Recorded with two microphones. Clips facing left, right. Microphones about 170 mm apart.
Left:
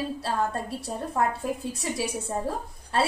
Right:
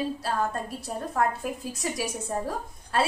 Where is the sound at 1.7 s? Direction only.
30° left (ahead or behind).